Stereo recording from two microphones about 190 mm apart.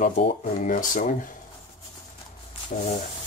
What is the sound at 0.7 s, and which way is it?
Speech, 45° left (ahead or behind).